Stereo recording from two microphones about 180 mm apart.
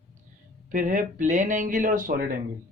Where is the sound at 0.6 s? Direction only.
45° right (ahead or behind).